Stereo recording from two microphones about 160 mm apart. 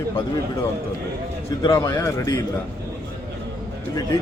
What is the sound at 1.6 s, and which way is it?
Speech, 20° left (ahead or behind).